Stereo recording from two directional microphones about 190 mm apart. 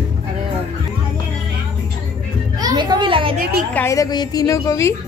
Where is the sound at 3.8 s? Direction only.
15° left (ahead or behind).